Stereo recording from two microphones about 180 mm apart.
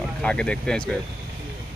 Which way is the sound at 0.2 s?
5° left (ahead or behind).